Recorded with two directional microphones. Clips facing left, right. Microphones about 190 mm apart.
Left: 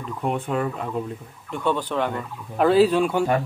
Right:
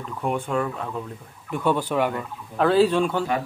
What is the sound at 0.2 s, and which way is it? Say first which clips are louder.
Speech: even; 5° left (ahead or behind).